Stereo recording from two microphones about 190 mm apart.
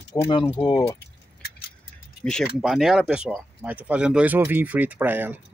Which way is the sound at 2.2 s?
Centre (ahead or behind).